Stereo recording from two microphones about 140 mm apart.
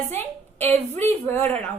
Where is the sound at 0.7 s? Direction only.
15° left (ahead or behind).